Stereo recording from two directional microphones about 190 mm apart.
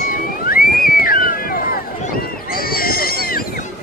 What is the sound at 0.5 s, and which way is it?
Boat, 50° left (ahead or behind).